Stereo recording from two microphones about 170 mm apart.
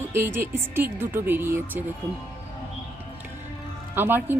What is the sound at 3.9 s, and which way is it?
Speech, 10° right (ahead or behind).